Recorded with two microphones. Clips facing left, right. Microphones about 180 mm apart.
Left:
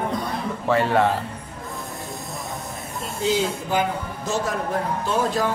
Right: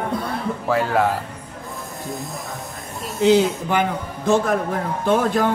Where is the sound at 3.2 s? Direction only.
70° right (ahead or behind).